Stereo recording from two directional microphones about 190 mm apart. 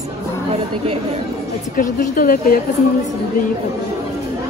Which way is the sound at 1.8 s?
45° left (ahead or behind).